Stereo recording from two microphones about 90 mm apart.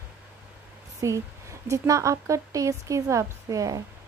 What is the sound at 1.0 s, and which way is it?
Speech, 35° right (ahead or behind).